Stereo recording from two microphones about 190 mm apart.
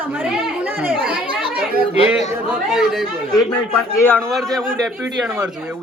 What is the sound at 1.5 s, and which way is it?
Speech, 50° right (ahead or behind).